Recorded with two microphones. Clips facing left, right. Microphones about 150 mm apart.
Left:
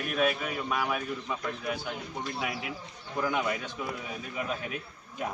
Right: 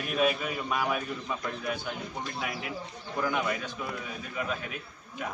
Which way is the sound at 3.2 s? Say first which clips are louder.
Even; 15° left (ahead or behind).